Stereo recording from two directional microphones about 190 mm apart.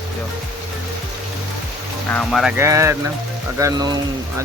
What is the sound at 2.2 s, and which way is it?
Speech, centre (ahead or behind).